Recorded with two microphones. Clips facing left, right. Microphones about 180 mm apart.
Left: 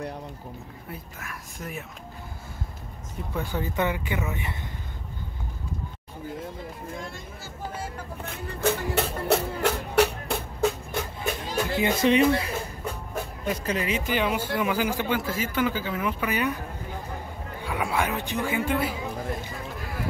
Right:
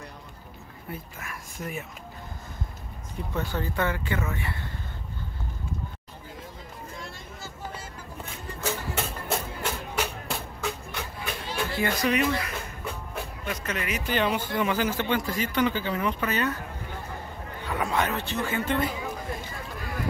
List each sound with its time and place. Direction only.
0.8 s speech: centre (ahead or behind)
3.3 s speech: 15° left (ahead or behind)
8.3 s music: 60° left (ahead or behind)
10.6 s music: 45° left (ahead or behind)
11.7 s speech: 20° left (ahead or behind)
14.1 s a man's voice: 10° left (ahead or behind)